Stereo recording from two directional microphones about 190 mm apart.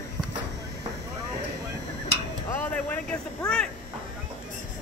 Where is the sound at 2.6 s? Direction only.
10° left (ahead or behind).